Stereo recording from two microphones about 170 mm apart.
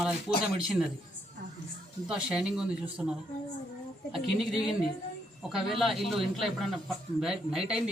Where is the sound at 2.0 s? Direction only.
5° right (ahead or behind).